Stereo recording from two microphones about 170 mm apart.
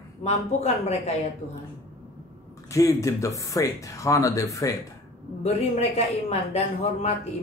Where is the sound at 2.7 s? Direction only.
20° left (ahead or behind).